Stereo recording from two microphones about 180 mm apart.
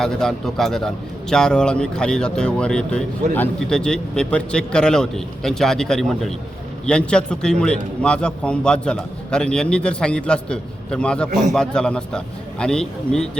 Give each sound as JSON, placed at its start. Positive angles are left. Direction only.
{"t": 0.0, "sound": "a man's voice", "side_deg": 5}
{"t": 11.3, "sound": "a man's voice", "side_deg": -45}
{"t": 11.5, "sound": "a man's voice", "side_deg": 5}